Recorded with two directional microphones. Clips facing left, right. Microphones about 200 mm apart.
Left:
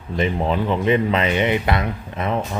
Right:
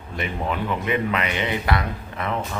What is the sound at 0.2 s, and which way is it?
Speech, 25° left (ahead or behind).